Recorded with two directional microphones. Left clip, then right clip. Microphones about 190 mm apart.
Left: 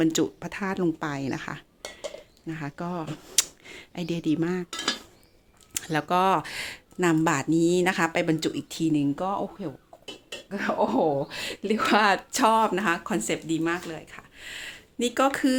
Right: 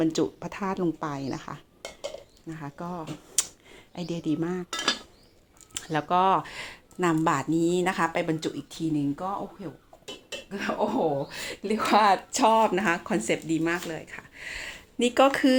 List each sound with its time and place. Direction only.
0.0 s speech: 20° left (ahead or behind); by 15.5 s 5° left (ahead or behind)